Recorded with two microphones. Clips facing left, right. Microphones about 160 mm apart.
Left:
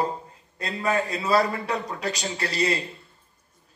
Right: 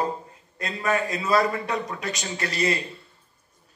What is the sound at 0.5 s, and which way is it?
A man's voice, 30° left (ahead or behind).